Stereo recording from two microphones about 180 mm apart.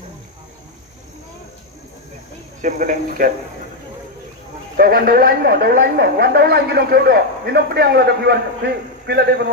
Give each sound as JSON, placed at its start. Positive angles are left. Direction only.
{"t": 2.6, "sound": "speech", "side_deg": -45}
{"t": 4.8, "sound": "a woman's voice", "side_deg": -55}